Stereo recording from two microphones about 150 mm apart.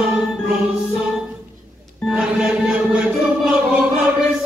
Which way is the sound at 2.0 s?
5° right (ahead or behind).